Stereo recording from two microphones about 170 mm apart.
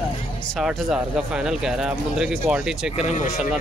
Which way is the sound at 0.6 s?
5° right (ahead or behind).